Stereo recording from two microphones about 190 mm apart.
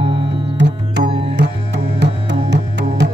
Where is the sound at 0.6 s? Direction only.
65° right (ahead or behind).